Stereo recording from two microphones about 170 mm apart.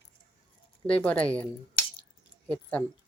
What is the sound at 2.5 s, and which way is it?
Speech, 10° left (ahead or behind).